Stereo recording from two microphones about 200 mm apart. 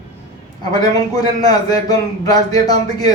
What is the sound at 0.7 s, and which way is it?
A man's voice, 20° left (ahead or behind).